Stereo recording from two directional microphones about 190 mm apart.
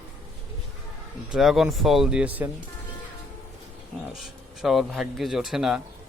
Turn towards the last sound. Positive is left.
turn(degrees=0)  # may be behind; listen again after turning